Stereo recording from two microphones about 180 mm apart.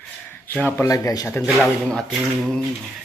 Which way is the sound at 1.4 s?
Centre (ahead or behind).